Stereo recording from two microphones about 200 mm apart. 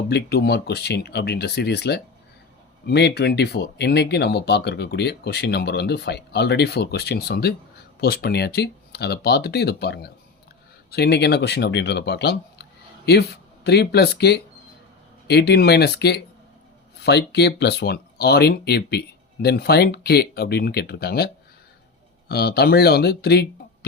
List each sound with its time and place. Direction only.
0.1 s speech: 55° left (ahead or behind)
22.3 s speech: 50° left (ahead or behind)